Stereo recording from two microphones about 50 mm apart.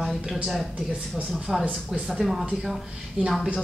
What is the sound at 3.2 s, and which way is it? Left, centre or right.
Speech, right.